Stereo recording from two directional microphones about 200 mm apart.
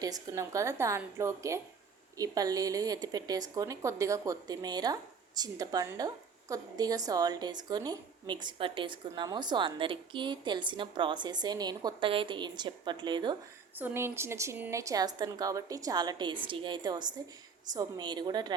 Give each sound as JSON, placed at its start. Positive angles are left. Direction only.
{"t": 0.0, "sound": "a woman's voice", "side_deg": -15}
{"t": 13.7, "sound": "a woman's voice", "side_deg": -10}